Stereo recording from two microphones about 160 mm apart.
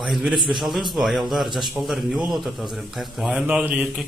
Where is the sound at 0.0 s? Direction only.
5° right (ahead or behind).